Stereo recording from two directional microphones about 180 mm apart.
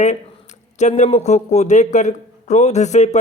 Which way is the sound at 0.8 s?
40° left (ahead or behind).